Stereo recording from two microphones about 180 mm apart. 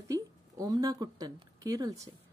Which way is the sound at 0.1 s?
20° right (ahead or behind).